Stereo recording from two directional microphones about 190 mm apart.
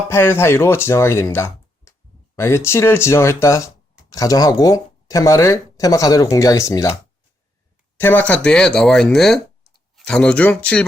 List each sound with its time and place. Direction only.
0.1 s speech: 10° left (ahead or behind)